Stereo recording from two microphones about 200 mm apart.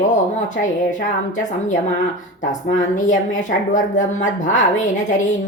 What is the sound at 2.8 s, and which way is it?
Speech, 40° left (ahead or behind).